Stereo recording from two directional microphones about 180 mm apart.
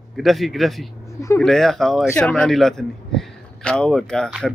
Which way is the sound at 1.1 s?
15° left (ahead or behind).